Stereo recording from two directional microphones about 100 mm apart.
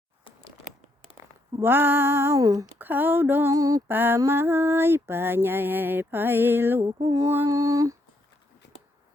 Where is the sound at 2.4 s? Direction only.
35° right (ahead or behind).